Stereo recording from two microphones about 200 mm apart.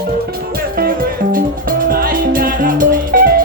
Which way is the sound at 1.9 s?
45° right (ahead or behind).